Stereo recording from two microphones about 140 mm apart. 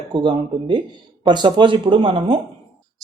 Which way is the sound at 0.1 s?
35° right (ahead or behind).